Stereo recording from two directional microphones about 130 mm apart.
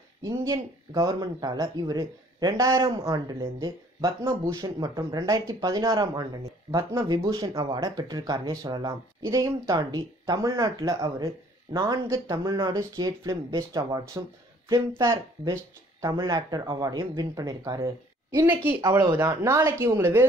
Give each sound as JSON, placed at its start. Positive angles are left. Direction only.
{"t": 0.2, "sound": "speech", "side_deg": -25}
{"t": 18.5, "sound": "speech", "side_deg": -15}